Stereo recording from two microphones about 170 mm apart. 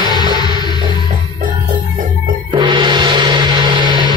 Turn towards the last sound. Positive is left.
turn(degrees=-25)  # may be behind; listen again after turning